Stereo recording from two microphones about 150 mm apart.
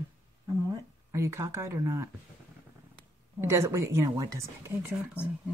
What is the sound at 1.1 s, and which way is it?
Speech, 20° right (ahead or behind).